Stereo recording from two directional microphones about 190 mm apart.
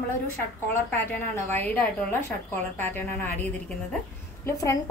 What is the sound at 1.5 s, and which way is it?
A woman's voice, 10° left (ahead or behind).